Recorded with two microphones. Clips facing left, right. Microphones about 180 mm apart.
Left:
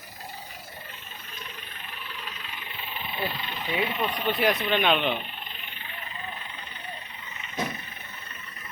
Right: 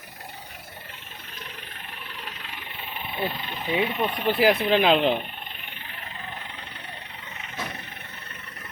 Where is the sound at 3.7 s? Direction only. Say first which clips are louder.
Right 3 dB; 30° right (ahead or behind).